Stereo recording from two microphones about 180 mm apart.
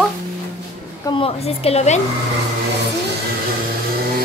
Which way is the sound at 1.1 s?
30° left (ahead or behind).